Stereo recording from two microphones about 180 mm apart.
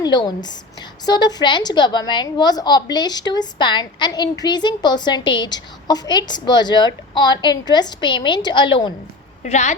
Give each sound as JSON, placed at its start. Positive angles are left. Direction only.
{"t": 0.0, "sound": "a woman's voice", "side_deg": 25}
{"t": 9.4, "sound": "a woman's voice", "side_deg": 40}